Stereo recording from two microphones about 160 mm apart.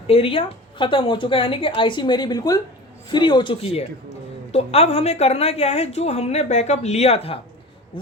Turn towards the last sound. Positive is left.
turn(degrees=40)  # may be behind; listen again after turning